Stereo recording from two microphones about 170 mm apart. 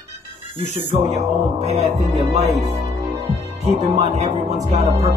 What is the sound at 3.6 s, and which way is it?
Music, 40° right (ahead or behind).